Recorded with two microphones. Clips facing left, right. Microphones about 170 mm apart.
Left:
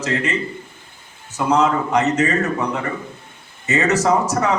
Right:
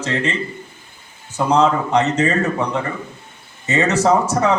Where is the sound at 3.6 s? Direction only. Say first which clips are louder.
Right 1 dB; 30° right (ahead or behind).